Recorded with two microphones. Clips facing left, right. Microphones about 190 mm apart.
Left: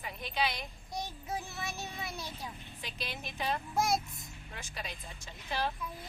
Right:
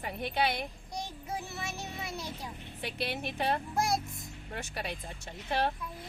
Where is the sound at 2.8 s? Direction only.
60° right (ahead or behind).